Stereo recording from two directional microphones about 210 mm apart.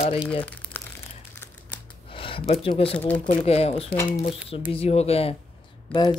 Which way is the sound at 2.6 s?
25° left (ahead or behind).